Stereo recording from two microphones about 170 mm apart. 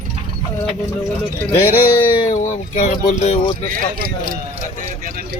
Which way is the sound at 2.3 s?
45° left (ahead or behind).